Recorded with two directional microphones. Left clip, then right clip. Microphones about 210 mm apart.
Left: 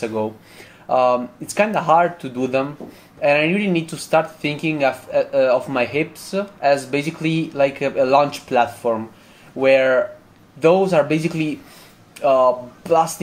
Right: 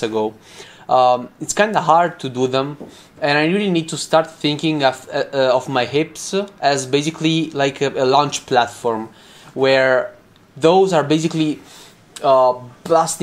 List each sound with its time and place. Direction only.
0.0 s speech: 30° right (ahead or behind)